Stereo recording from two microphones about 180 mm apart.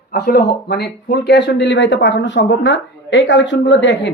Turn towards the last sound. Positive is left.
turn(degrees=80)